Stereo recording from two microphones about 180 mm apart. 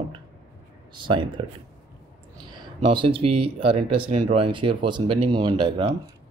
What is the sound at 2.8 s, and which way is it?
Speech, 30° right (ahead or behind).